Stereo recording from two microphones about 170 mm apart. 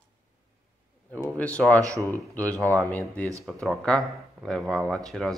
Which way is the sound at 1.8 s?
20° right (ahead or behind).